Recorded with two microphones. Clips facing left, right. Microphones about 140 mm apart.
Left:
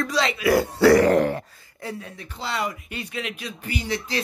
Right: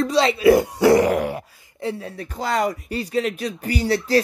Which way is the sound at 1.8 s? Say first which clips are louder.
Right 7 dB; 30° right (ahead or behind).